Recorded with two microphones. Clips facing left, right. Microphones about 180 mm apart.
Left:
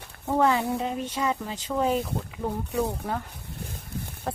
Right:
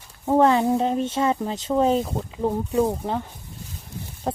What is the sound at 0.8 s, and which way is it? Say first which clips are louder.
Speech: right 6 dB; 30° right (ahead or behind).